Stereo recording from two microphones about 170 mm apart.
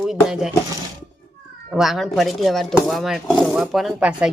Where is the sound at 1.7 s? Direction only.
Centre (ahead or behind).